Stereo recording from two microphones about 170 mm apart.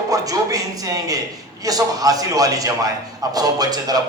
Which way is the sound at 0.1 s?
20° right (ahead or behind).